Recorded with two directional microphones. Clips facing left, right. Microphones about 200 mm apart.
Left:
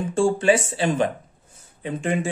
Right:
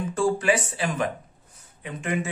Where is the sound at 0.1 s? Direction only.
25° left (ahead or behind).